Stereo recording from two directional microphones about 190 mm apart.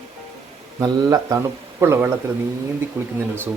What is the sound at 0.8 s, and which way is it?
Speech, 20° right (ahead or behind).